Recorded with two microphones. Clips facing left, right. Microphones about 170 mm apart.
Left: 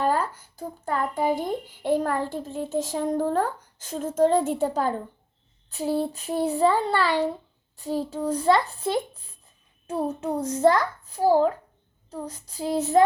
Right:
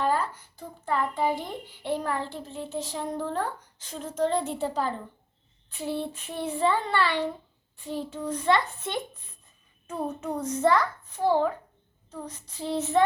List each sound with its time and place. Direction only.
0.0 s a child's voice: 45° left (ahead or behind)